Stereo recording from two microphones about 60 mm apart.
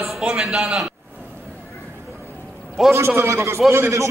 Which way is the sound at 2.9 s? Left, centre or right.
Right.